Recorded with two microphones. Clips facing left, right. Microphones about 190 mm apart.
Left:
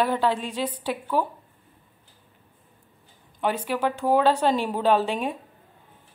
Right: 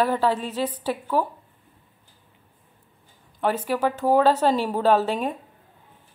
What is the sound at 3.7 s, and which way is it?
A woman's voice, 5° right (ahead or behind).